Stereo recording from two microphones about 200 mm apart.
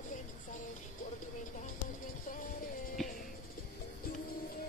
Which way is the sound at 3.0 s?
Centre (ahead or behind).